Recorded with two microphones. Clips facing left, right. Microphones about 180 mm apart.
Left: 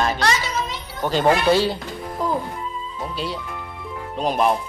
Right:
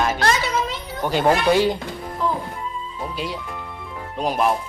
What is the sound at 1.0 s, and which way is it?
Speech, 10° right (ahead or behind).